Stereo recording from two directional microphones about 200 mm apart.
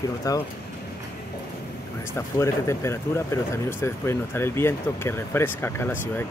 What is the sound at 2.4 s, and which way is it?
Speech, 15° left (ahead or behind).